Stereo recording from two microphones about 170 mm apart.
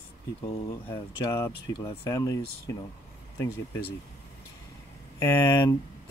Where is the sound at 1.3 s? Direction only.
20° left (ahead or behind).